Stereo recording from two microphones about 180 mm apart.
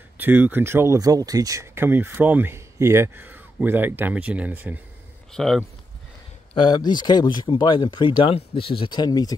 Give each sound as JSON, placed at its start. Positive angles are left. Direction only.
{"t": 0.2, "sound": "speech", "side_deg": -10}
{"t": 5.3, "sound": "speech", "side_deg": 0}
{"t": 6.5, "sound": "speech", "side_deg": 25}